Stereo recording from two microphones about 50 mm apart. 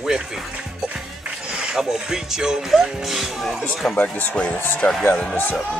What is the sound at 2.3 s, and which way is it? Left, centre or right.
Speech, centre.